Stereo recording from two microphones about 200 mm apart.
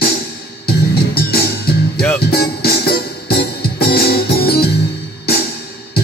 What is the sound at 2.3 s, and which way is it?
Music, 50° left (ahead or behind).